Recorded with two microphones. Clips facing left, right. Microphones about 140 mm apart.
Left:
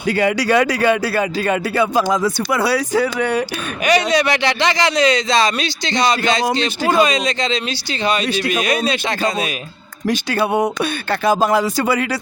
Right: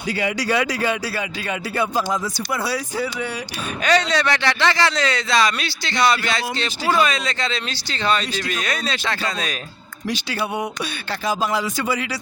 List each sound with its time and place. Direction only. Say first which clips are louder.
0.2 s speech: left 6 dB; 60° left (ahead or behind)
1.7 s speech: left 3 dB; 80° left; by 3.4 s 60° left (ahead or behind)
3.8 s speech: left 3 dB; 15° left (ahead or behind)
10.1 s speech: left 7 dB; 55° left (ahead or behind)